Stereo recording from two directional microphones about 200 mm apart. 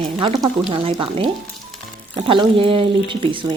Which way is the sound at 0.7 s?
25° right (ahead or behind).